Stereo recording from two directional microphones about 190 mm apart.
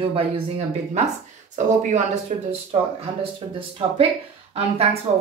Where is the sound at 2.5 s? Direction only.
30° right (ahead or behind).